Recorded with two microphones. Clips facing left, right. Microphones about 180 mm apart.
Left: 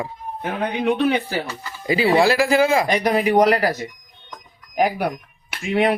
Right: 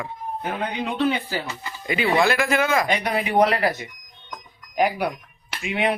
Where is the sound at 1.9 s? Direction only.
35° left (ahead or behind).